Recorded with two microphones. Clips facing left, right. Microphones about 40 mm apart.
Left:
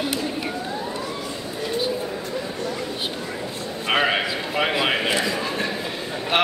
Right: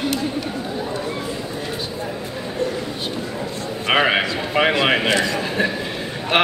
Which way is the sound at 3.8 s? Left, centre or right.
Centre.